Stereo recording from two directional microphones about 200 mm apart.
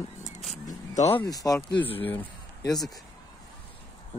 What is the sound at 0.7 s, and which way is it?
Speech, 35° left (ahead or behind).